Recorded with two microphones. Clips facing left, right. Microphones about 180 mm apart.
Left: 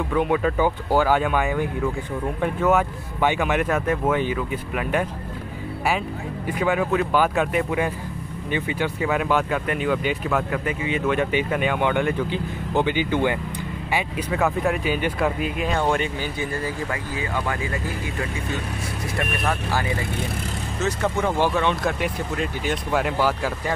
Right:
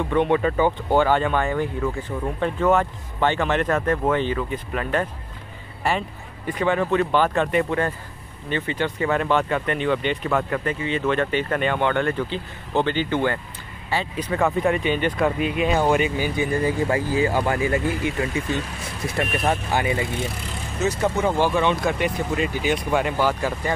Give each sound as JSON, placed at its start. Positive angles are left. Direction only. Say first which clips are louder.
{"t": 0.1, "sound": "speech", "louder": "right 1 dB", "side_deg": 5}
{"t": 19.4, "sound": "speech", "louder": "right 3 dB", "side_deg": -20}
{"t": 21.3, "sound": "speech", "louder": "right 1 dB", "side_deg": 0}